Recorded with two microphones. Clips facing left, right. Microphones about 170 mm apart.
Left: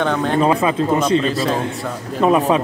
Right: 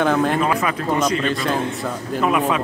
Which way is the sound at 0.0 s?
5° right (ahead or behind).